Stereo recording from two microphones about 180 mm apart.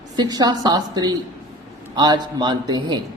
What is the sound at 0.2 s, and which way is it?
A woman's voice, 20° right (ahead or behind).